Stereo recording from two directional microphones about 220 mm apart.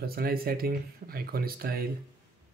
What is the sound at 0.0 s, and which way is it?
Speech, 45° right (ahead or behind).